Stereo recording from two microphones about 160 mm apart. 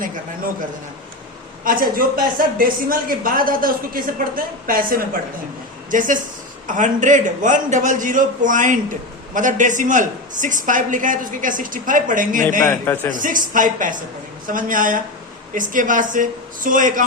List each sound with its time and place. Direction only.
1.6 s a man's voice: 60° right (ahead or behind)
12.6 s a man's voice: 15° left (ahead or behind)
13.1 s speech: 55° right (ahead or behind)